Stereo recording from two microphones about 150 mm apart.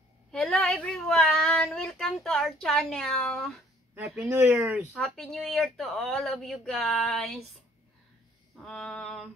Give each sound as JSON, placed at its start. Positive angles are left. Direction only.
{"t": 0.3, "sound": "speech", "side_deg": 0}
{"t": 3.9, "sound": "speech", "side_deg": -10}
{"t": 4.9, "sound": "speech", "side_deg": 5}
{"t": 8.5, "sound": "speech", "side_deg": 5}